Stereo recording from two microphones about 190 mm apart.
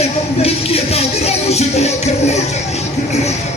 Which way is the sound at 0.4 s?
30° left (ahead or behind).